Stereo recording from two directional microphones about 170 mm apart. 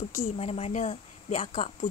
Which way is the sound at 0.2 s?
35° left (ahead or behind).